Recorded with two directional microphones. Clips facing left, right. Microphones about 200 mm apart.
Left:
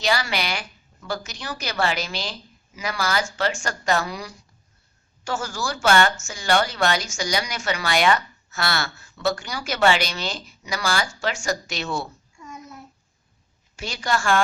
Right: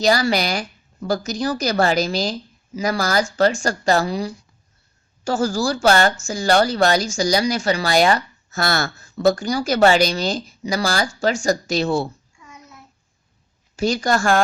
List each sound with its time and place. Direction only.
0.0 s speech: 40° right (ahead or behind)
13.7 s speech: 40° right (ahead or behind)